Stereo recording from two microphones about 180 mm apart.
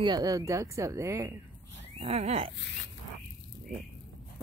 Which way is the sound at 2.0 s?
35° right (ahead or behind).